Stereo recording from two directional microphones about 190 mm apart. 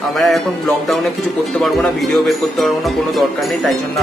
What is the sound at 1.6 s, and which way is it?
Speech, centre (ahead or behind).